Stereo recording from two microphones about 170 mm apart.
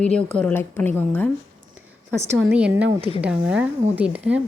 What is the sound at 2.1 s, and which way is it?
A woman's voice, 5° right (ahead or behind).